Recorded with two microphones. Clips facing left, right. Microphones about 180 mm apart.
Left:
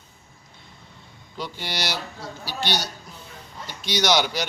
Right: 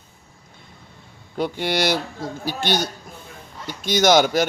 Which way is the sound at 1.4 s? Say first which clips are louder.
Right 9 dB; 55° right (ahead or behind).